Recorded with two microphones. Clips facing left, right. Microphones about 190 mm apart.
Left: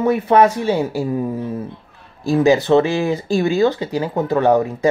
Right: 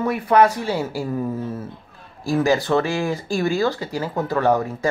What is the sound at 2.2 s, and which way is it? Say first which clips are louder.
Speech: left 5 dB; 20° left (ahead or behind).